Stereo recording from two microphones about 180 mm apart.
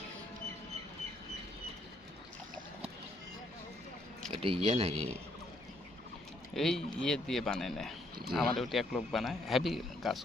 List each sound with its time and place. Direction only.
4.3 s speech: 30° right (ahead or behind)
6.5 s speech: centre (ahead or behind)